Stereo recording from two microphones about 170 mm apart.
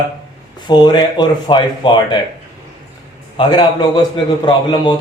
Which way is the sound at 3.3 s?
30° left (ahead or behind).